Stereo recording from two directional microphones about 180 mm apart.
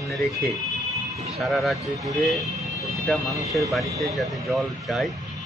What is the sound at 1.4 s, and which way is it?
Speech, centre (ahead or behind).